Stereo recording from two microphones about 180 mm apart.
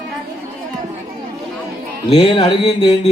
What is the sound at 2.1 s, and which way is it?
Speech, 30° left (ahead or behind).